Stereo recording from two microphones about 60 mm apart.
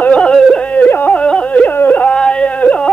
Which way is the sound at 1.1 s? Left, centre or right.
Centre.